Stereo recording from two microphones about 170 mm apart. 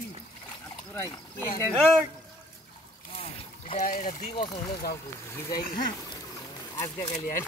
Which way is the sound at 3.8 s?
55° left (ahead or behind).